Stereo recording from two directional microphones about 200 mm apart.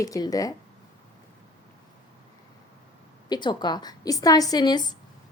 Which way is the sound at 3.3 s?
20° left (ahead or behind).